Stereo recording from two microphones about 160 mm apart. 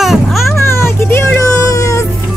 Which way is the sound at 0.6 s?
15° left (ahead or behind).